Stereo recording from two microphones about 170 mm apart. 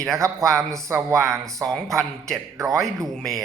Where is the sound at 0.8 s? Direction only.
15° right (ahead or behind).